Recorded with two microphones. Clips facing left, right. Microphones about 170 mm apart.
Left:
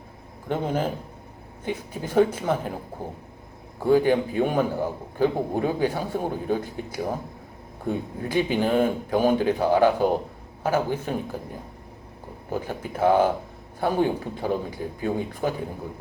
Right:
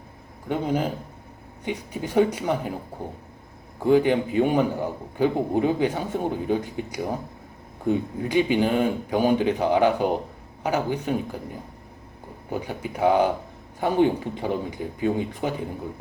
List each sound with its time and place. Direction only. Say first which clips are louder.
0.4 s speech: right 1 dB; 15° right (ahead or behind)
3.8 s a man's voice: even; 20° right (ahead or behind)
12.5 s a man's voice: even; 15° right (ahead or behind)